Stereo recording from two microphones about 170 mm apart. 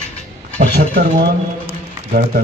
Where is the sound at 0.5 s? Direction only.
65° right (ahead or behind).